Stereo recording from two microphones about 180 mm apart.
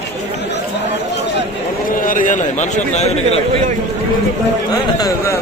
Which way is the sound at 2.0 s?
50° left (ahead or behind).